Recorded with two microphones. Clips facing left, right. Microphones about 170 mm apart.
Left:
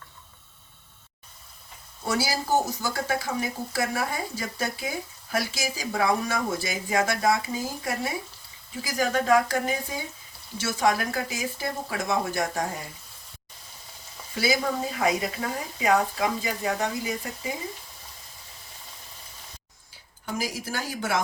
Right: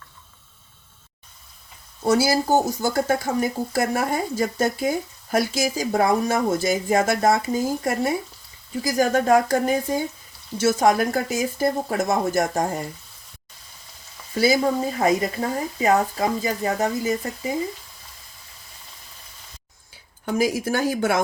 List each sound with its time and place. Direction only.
2.0 s speech: 45° right (ahead or behind)
2.5 s speech: 20° right (ahead or behind)
2.8 s speech: 45° right (ahead or behind)
14.3 s speech: 45° right (ahead or behind)
20.2 s speech: 60° right (ahead or behind)